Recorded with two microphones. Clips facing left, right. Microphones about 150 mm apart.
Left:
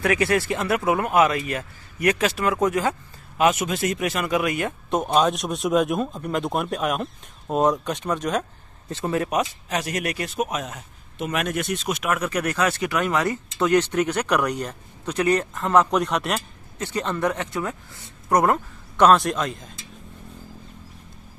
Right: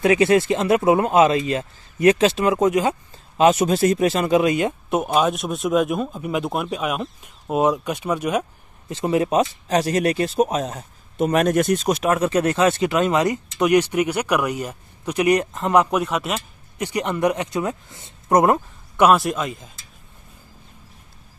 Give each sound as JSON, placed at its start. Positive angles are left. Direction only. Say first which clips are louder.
{"t": 0.0, "sound": "speech", "louder": "right 5 dB", "side_deg": -20}
{"t": 4.9, "sound": "speech", "louder": "even", "side_deg": -5}
{"t": 16.7, "sound": "speech", "louder": "right 3 dB", "side_deg": -15}
{"t": 18.9, "sound": "a man's voice", "louder": "right 1 dB", "side_deg": -5}